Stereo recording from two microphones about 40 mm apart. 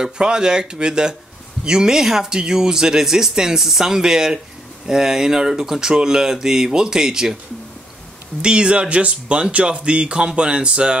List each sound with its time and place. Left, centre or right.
0.0 s speech: centre
8.4 s speech: right